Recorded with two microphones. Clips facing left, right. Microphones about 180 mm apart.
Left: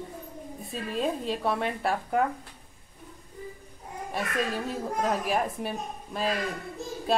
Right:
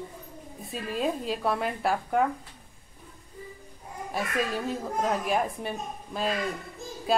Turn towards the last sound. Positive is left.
turn(degrees=0)  # may be behind; listen again after turning